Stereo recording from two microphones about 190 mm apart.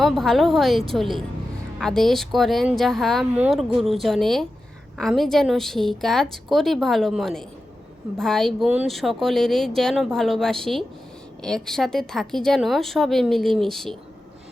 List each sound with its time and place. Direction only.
0.0 s speech: centre (ahead or behind)